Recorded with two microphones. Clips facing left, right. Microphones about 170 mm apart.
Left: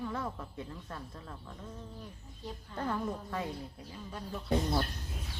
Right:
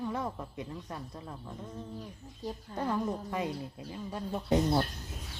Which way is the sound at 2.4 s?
40° right (ahead or behind).